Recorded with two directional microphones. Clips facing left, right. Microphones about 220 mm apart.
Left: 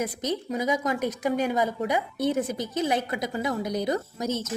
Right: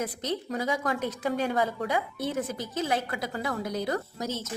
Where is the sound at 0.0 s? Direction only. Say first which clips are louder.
Left 3 dB; 15° left (ahead or behind).